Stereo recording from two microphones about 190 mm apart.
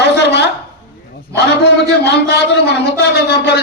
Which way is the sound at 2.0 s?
60° left (ahead or behind).